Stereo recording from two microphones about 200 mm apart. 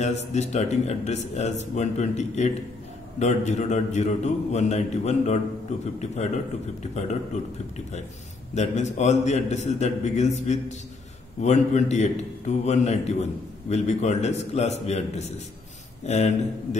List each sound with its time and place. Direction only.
0.0 s a man's voice: 35° left (ahead or behind)
6.8 s a man's voice: 35° left (ahead or behind)
8.5 s a man's voice: 35° left (ahead or behind)